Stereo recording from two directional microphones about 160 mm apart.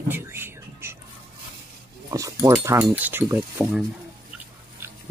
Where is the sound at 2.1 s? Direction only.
20° right (ahead or behind).